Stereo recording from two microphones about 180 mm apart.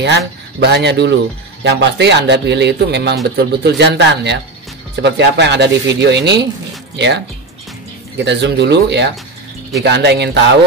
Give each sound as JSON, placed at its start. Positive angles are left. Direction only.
{"t": 0.6, "sound": "speech", "side_deg": -70}